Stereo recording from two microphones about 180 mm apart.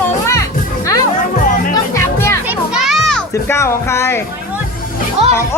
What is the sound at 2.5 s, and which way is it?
Children playing, 5° right (ahead or behind).